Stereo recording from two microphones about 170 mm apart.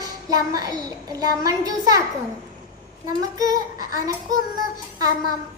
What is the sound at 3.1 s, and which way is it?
Speech, 20° right (ahead or behind).